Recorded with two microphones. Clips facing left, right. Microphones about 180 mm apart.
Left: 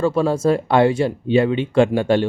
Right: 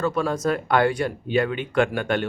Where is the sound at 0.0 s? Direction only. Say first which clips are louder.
Left 6 dB; 30° left (ahead or behind).